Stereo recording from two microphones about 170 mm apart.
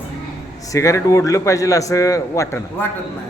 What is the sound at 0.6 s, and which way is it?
A man's voice, 20° left (ahead or behind).